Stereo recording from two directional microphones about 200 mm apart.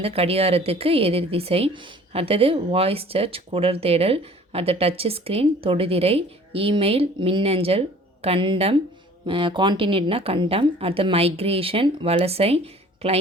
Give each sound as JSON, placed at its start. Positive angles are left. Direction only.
{"t": 0.0, "sound": "a woman's voice", "side_deg": -30}